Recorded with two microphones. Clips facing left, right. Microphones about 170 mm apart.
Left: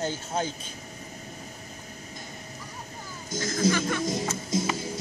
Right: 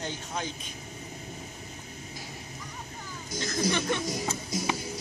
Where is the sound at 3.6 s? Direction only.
20° left (ahead or behind).